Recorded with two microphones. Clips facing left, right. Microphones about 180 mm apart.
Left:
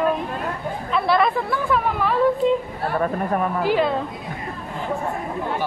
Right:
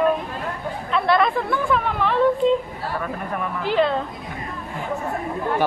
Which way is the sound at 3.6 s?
5° left (ahead or behind).